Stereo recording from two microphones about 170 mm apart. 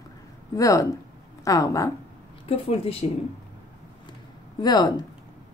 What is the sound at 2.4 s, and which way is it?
Speech, 35° left (ahead or behind).